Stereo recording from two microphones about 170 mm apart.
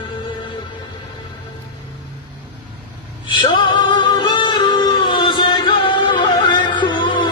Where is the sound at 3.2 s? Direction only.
30° left (ahead or behind).